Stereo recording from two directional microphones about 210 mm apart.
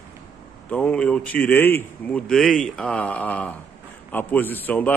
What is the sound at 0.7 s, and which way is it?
Speech, 5° left (ahead or behind).